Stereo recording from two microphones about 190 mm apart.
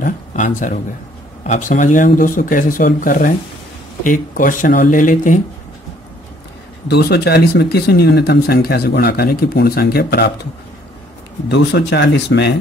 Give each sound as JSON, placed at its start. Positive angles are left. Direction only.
{"t": 0.0, "sound": "speech", "side_deg": 45}
{"t": 6.9, "sound": "speech", "side_deg": 60}
{"t": 11.4, "sound": "speech", "side_deg": 65}